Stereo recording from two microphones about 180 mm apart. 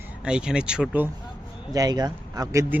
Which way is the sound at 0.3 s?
5° right (ahead or behind).